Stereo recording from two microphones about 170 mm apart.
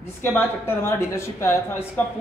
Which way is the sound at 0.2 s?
15° left (ahead or behind).